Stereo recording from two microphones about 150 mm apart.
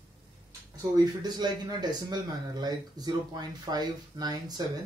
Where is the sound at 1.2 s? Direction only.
25° right (ahead or behind).